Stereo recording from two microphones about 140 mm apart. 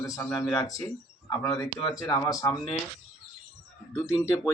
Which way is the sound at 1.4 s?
25° left (ahead or behind).